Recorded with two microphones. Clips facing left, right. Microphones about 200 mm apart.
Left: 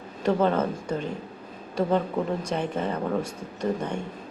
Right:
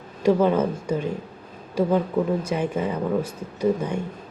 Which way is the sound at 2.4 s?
10° right (ahead or behind).